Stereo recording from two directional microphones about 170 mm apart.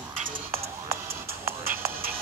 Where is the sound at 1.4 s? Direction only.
15° right (ahead or behind).